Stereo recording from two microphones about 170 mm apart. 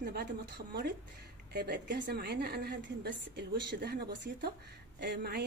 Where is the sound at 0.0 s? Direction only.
70° right (ahead or behind).